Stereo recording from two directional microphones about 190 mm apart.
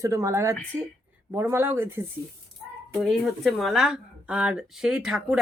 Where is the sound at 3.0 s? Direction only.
Centre (ahead or behind).